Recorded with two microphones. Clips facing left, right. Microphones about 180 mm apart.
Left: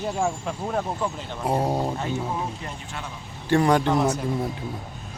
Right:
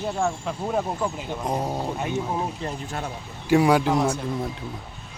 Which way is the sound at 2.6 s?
40° right (ahead or behind).